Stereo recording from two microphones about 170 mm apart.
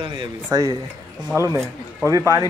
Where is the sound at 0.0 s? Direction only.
25° right (ahead or behind).